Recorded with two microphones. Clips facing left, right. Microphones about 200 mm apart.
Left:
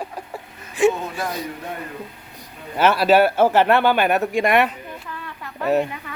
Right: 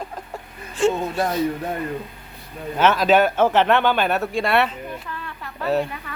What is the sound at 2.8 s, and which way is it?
Speech, 10° left (ahead or behind).